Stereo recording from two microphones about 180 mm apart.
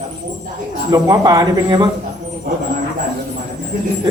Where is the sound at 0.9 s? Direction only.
20° right (ahead or behind).